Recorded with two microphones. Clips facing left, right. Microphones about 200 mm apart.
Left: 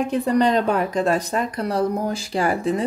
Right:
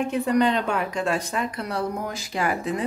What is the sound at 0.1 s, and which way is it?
Speech, 35° left (ahead or behind).